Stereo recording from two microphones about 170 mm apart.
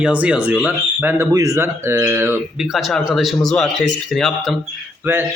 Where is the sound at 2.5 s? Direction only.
Centre (ahead or behind).